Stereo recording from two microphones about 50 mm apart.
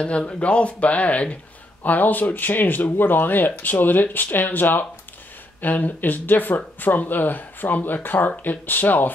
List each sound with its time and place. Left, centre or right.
0.0 s speech: left
1.9 s speech: left